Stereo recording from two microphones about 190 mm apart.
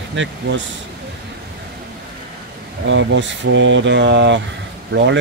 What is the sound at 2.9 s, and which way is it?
Speech, 75° right (ahead or behind).